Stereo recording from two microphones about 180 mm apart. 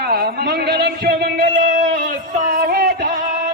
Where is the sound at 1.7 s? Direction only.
45° right (ahead or behind); by 3.2 s 60° right (ahead or behind).